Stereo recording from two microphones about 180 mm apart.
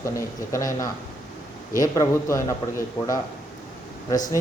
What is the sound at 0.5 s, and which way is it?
A man's voice, 20° left (ahead or behind).